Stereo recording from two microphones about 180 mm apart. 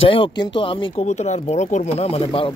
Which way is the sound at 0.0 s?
30° left (ahead or behind).